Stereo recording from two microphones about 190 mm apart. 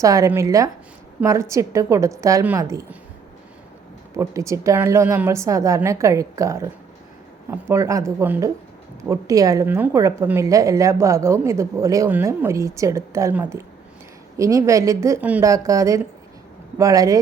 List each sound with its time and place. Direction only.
0.0 s a woman's voice: 15° right (ahead or behind)
4.2 s a woman's voice: 15° right (ahead or behind)